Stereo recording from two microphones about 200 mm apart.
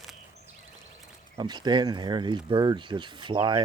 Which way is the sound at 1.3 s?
20° right (ahead or behind).